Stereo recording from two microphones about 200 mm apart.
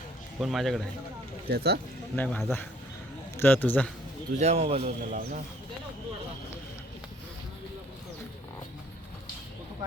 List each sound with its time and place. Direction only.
0.3 s speech: centre (ahead or behind)
1.5 s speech: 50° right (ahead or behind)
2.1 s speech: 5° left (ahead or behind)
4.4 s speech: 30° right (ahead or behind)